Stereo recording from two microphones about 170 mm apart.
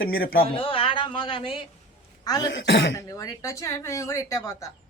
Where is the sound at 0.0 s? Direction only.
60° left (ahead or behind).